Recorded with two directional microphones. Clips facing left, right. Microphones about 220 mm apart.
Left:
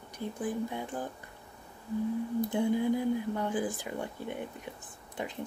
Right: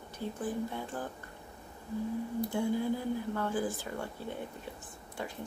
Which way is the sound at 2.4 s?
20° left (ahead or behind).